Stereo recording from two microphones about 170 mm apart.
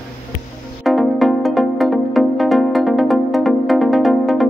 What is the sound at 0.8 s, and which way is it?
Music, centre (ahead or behind).